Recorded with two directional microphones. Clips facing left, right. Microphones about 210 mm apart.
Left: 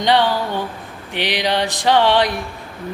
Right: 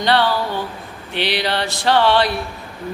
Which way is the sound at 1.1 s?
15° left (ahead or behind).